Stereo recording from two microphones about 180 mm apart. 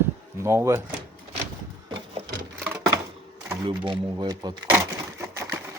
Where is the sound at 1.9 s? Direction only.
25° right (ahead or behind).